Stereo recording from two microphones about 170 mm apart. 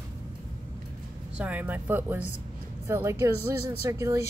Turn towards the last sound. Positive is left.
turn(degrees=-20)  # may be behind; listen again after turning